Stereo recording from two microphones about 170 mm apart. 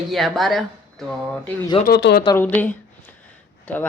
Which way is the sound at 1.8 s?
75° left (ahead or behind).